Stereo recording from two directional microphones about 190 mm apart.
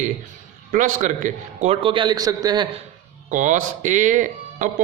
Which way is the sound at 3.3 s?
40° right (ahead or behind).